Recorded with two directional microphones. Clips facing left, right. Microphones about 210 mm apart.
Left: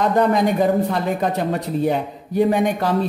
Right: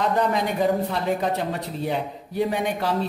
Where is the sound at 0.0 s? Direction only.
45° left (ahead or behind).